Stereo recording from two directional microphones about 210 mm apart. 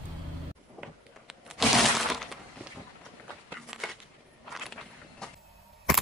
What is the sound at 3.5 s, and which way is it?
Walk, centre (ahead or behind).